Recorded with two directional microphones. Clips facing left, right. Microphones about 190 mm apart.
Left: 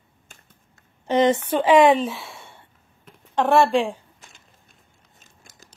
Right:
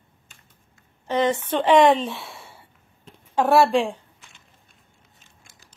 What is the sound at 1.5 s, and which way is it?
A woman's voice, 5° left (ahead or behind).